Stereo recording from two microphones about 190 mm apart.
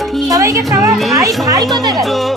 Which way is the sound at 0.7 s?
15° right (ahead or behind).